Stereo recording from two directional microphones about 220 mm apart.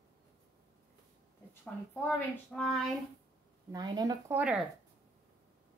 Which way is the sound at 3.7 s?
20° right (ahead or behind).